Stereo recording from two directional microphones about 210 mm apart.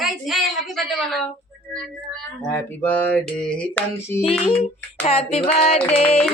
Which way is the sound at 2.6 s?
5° left (ahead or behind).